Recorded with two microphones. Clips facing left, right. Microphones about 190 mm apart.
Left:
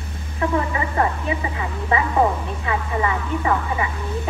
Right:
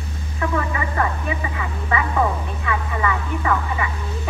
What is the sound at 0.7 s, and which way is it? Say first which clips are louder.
Speech: left 2 dB; 25° left (ahead or behind).